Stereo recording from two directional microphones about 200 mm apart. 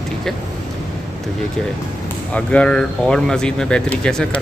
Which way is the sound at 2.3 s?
5° left (ahead or behind).